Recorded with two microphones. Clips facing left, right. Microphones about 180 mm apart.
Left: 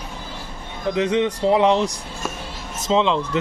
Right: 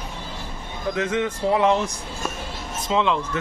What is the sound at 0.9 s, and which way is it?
Speech, 20° left (ahead or behind).